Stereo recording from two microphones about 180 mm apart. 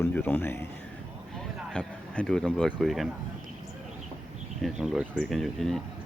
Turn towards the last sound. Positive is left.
turn(degrees=0)  # may be behind; listen again after turning